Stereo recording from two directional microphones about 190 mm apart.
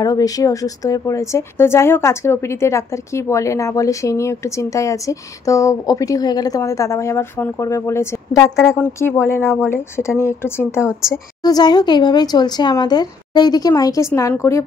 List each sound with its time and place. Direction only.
0.0 s a woman's voice: 20° left (ahead or behind)
10.9 s a woman's voice: 5° right (ahead or behind)
11.4 s speech: 20° left (ahead or behind)